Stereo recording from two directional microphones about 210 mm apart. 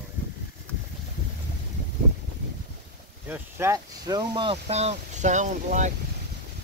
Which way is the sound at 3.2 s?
10° right (ahead or behind).